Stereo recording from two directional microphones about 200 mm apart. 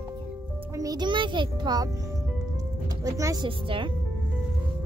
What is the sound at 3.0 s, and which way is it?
Speech, 15° right (ahead or behind).